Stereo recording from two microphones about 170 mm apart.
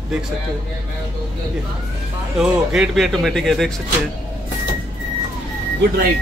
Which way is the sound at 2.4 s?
Centre (ahead or behind).